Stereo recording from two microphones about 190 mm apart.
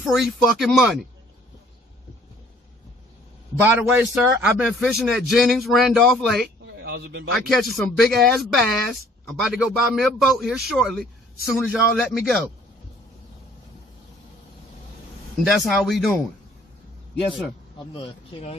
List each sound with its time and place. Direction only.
0.0 s speech: centre (ahead or behind)
3.6 s speech: 10° right (ahead or behind)
6.6 s a sound: 65° right (ahead or behind)
7.3 s speech: centre (ahead or behind)
15.4 s speech: centre (ahead or behind)
17.9 s speech: 30° left (ahead or behind)